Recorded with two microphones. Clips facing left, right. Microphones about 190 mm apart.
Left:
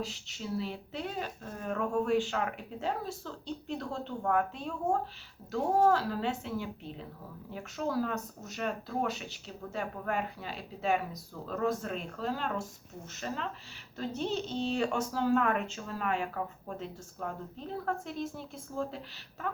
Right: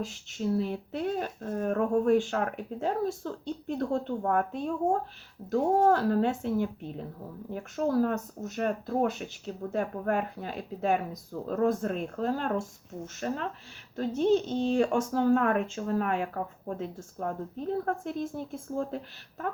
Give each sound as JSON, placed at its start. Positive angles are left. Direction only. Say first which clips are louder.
{"t": 0.0, "sound": "speech", "louder": "right 6 dB", "side_deg": -50}